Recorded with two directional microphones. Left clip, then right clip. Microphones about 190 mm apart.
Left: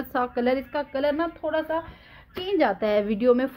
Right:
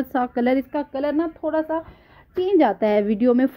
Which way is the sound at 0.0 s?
30° right (ahead or behind).